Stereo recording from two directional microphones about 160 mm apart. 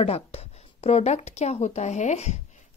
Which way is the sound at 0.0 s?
40° left (ahead or behind).